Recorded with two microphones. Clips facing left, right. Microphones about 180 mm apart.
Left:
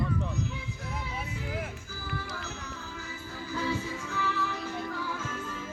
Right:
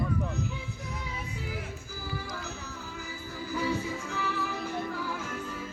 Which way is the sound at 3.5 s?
10° right (ahead or behind).